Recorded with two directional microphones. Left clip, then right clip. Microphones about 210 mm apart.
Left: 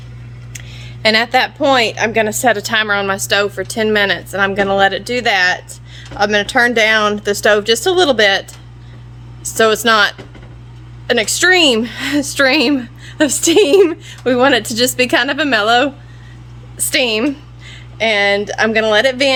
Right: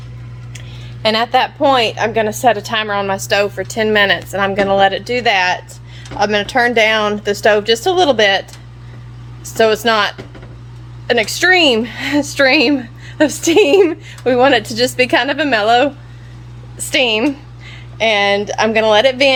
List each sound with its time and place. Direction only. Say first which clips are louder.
0.5 s a woman's voice: left 3 dB; 15° left (ahead or behind)